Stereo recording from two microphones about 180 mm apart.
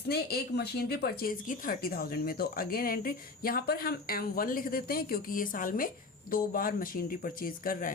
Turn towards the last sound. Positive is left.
turn(degrees=50)  # may be behind; listen again after turning